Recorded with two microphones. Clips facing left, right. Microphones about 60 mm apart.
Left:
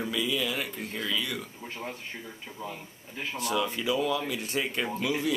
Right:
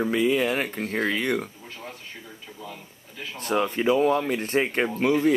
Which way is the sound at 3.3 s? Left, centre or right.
Right.